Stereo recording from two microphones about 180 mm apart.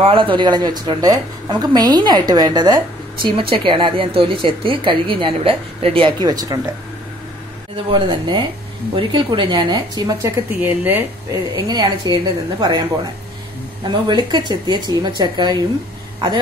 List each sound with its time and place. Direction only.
0.0 s a woman's voice: 30° right (ahead or behind)
7.7 s a woman's voice: 25° right (ahead or behind)
10.2 s speech: 10° right (ahead or behind)
11.5 s a woman's voice: 20° right (ahead or behind)